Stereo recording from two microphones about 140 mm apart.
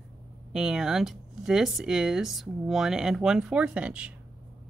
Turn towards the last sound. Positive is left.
turn(degrees=-5)  # may be behind; listen again after turning